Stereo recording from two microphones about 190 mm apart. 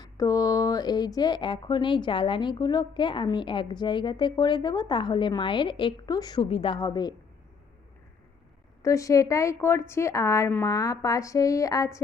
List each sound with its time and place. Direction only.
0.0 s speech: 20° left (ahead or behind)
8.8 s a woman's voice: 15° left (ahead or behind)